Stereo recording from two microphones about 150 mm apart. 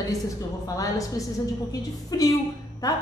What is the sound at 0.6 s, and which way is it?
A woman's voice, 25° left (ahead or behind).